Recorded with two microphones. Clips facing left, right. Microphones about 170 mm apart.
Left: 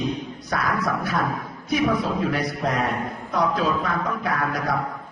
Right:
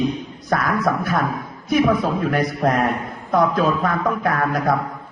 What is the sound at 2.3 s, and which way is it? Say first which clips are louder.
A man's voice: right 5 dB; 50° right (ahead or behind).